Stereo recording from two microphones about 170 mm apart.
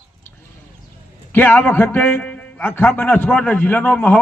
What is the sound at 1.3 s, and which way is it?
A man's voice, 10° left (ahead or behind).